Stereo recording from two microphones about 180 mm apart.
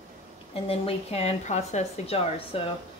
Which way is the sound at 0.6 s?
35° left (ahead or behind).